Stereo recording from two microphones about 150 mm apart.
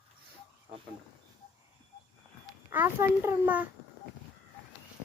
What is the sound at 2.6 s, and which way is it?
A child's voice, 15° right (ahead or behind).